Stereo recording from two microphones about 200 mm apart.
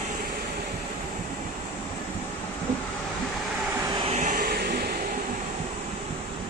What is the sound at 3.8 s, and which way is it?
Vehicle, 20° right (ahead or behind).